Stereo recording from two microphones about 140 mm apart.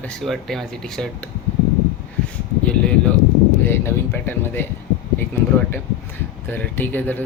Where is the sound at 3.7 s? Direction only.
15° left (ahead or behind).